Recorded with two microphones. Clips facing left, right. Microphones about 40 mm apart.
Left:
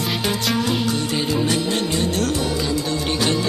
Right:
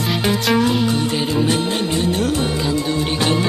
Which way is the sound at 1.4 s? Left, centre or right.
Right.